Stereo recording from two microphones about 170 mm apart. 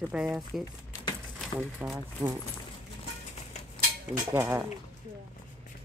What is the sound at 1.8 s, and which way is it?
Speech, 10° right (ahead or behind).